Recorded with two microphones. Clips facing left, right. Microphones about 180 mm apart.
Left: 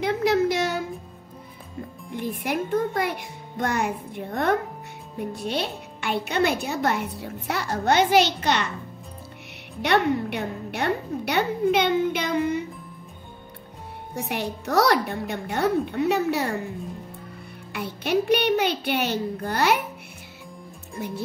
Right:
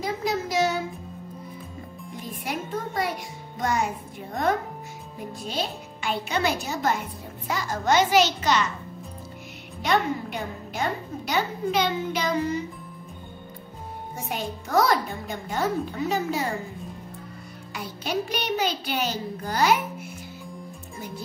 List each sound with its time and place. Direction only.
0.0 s a sound: 65° left (ahead or behind)
2.1 s a child's voice: 60° left (ahead or behind)
9.8 s a woman's voice: 65° left (ahead or behind)
14.1 s a child's voice: 70° left (ahead or behind)
17.7 s a woman's voice: 60° left (ahead or behind)